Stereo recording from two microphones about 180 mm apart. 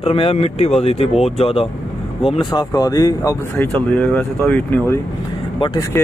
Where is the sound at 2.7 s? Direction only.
20° left (ahead or behind).